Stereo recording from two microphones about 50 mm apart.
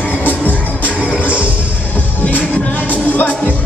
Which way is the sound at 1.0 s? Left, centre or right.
Right.